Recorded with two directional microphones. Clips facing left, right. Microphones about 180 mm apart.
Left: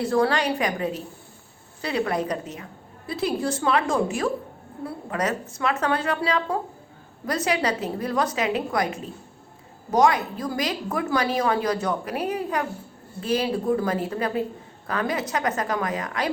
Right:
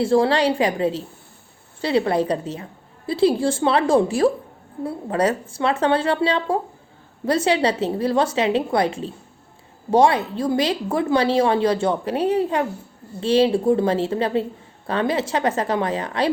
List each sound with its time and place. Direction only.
0.0 s a woman's voice: 25° right (ahead or behind)